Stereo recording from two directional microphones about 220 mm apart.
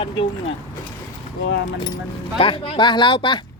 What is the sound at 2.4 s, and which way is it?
Speech, 25° left (ahead or behind).